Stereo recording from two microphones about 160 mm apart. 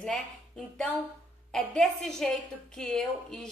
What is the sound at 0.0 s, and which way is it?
A woman's voice, 5° left (ahead or behind).